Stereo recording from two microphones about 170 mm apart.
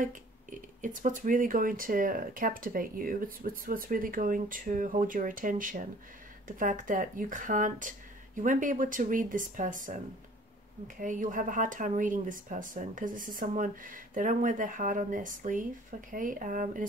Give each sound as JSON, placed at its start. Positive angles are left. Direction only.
{"t": 0.8, "sound": "speech", "side_deg": -50}
{"t": 11.0, "sound": "speech", "side_deg": -50}